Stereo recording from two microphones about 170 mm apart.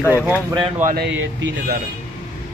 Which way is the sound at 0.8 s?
55° right (ahead or behind).